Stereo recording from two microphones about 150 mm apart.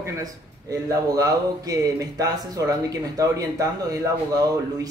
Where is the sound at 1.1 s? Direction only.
25° right (ahead or behind).